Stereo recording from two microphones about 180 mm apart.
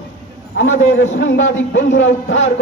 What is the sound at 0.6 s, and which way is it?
A man's voice, 90° left.